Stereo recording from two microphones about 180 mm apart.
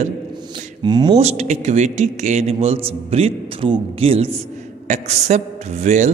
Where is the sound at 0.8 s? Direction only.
25° right (ahead or behind).